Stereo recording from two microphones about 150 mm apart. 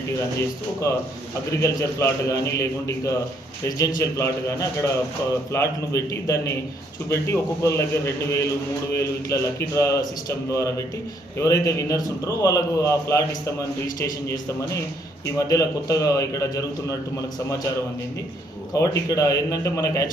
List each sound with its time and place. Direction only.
0.3 s a man's voice: 20° left (ahead or behind)
15.4 s a man's voice: 25° left (ahead or behind)
18.7 s a man's voice: 20° left (ahead or behind)